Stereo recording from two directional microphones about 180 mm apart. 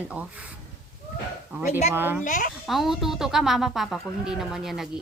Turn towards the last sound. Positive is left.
turn(degrees=0)  # may be behind; listen again after turning